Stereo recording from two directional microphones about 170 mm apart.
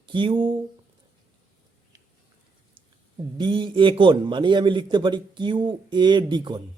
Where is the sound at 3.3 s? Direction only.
30° right (ahead or behind).